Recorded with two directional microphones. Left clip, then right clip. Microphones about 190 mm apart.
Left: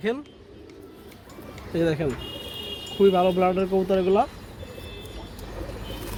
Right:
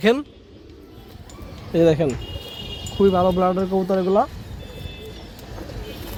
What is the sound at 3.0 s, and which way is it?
Speech, 15° right (ahead or behind).